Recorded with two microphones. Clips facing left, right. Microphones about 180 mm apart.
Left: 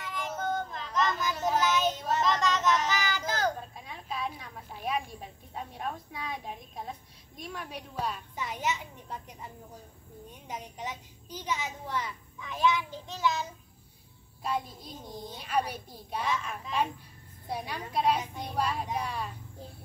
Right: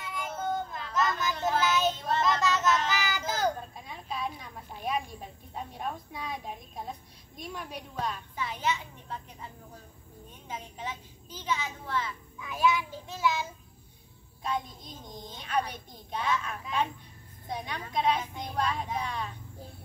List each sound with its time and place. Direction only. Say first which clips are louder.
0.0 s child singing: even; centre (ahead or behind); by 9.5 s 15° left (ahead or behind)
10.5 s a child's voice: even; 15° left (ahead or behind)
12.4 s child singing: right 1 dB; 5° right (ahead or behind)
14.4 s a child's voice: even; 5° left (ahead or behind)